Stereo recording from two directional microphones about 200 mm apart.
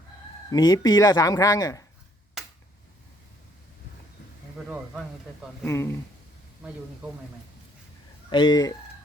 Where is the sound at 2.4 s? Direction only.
Centre (ahead or behind).